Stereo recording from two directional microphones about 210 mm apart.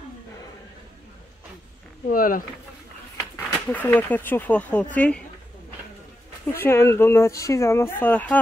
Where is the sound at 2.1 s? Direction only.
40° left (ahead or behind).